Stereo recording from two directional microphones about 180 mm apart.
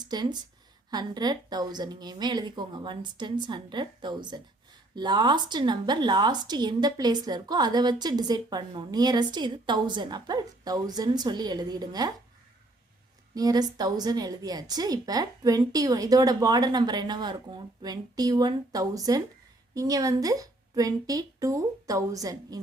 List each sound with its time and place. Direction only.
0.0 s a woman's voice: 25° right (ahead or behind)
13.3 s a woman's voice: 20° right (ahead or behind)